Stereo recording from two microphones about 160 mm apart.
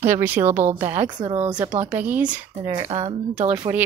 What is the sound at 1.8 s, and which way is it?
Speech, 10° right (ahead or behind).